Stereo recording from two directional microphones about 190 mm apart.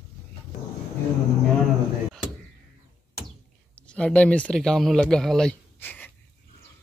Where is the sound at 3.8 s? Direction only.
5° left (ahead or behind).